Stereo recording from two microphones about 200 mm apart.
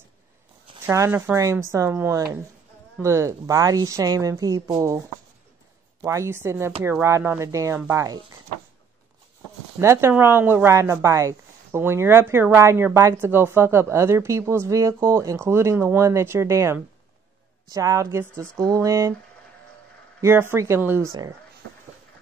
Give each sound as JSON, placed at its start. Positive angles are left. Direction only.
{"t": 0.8, "sound": "speech", "side_deg": -15}
{"t": 6.0, "sound": "speech", "side_deg": -15}
{"t": 9.8, "sound": "speech", "side_deg": -15}
{"t": 20.2, "sound": "speech", "side_deg": -10}
{"t": 21.6, "sound": "a sound", "side_deg": -75}